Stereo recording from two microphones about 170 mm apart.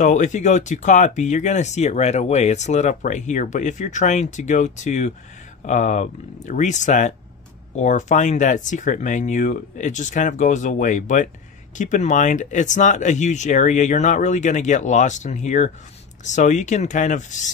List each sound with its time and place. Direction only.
0.0 s speech: 45° left (ahead or behind)